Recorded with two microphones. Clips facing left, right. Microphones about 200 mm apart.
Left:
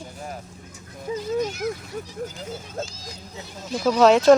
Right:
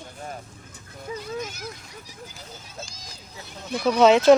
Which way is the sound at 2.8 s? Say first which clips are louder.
Left 8 dB; 45° left (ahead or behind).